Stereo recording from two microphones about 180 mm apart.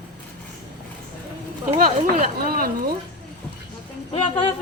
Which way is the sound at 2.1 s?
50° right (ahead or behind).